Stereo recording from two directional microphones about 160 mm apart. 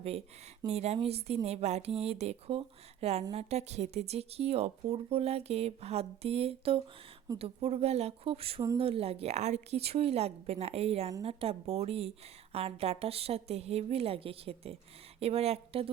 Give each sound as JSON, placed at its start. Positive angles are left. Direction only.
{"t": 0.7, "sound": "speech", "side_deg": -40}